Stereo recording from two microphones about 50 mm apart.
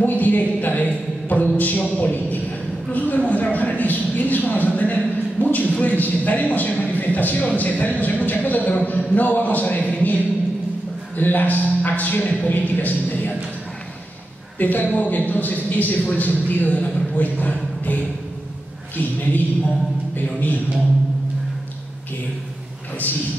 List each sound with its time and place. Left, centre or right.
0.0 s a sound: left
2.9 s a man's voice: left
14.6 s a man's voice: left
20.2 s a man's voice: left